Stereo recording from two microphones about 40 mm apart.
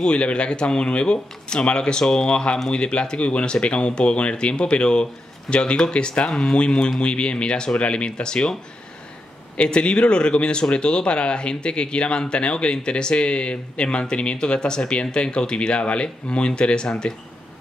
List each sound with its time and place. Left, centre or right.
0.0 s speech: left
9.6 s speech: left